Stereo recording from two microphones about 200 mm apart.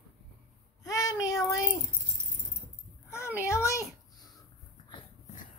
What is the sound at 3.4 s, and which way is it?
Speech, 15° left (ahead or behind).